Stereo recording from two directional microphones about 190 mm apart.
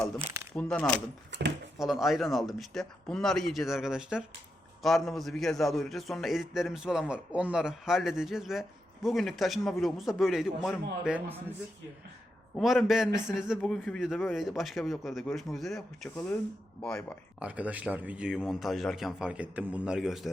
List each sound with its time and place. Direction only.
0.5 s a man's voice: 5° left (ahead or behind)
1.3 s a sound: 65° right (ahead or behind)
1.8 s a man's voice: centre (ahead or behind)
12.5 s a man's voice: centre (ahead or behind)
17.4 s a man's voice: 5° right (ahead or behind)